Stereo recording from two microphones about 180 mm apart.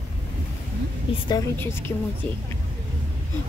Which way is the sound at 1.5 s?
15° left (ahead or behind).